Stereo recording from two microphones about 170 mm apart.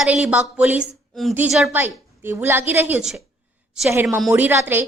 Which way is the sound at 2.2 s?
15° right (ahead or behind).